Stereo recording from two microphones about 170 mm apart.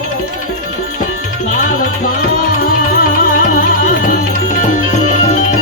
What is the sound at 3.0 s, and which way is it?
Music, 50° left (ahead or behind).